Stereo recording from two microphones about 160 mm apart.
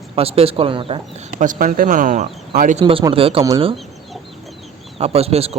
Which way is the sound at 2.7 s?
35° right (ahead or behind).